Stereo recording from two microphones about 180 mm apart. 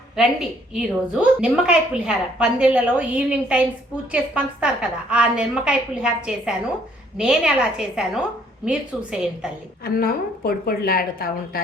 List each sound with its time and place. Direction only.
0.2 s a woman's voice: 5° right (ahead or behind)
9.8 s a woman's voice: 55° left (ahead or behind)